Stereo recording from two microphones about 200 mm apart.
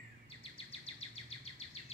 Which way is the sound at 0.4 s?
30° left (ahead or behind).